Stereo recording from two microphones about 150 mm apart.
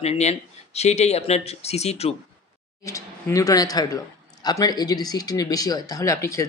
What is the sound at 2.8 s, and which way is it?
Speech, 20° left (ahead or behind).